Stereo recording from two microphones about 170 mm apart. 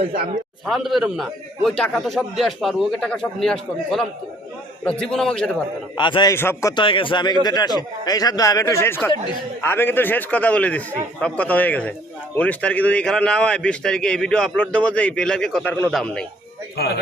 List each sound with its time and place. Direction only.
0.6 s a man's voice: centre (ahead or behind)
6.0 s speech: 30° left (ahead or behind)
6.3 s a man's voice: 15° left (ahead or behind)
16.7 s speech: 70° left (ahead or behind)